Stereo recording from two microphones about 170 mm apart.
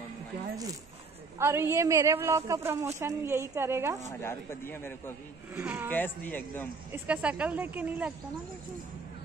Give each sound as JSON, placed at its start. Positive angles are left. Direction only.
{"t": 1.4, "sound": "a woman's voice", "side_deg": -15}
{"t": 4.1, "sound": "a man's voice", "side_deg": 15}
{"t": 5.5, "sound": "a woman's voice", "side_deg": -10}
{"t": 5.9, "sound": "a man's voice", "side_deg": 10}
{"t": 6.9, "sound": "a woman's voice", "side_deg": -5}